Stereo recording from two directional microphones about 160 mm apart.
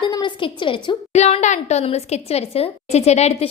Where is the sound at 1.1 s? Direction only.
45° left (ahead or behind).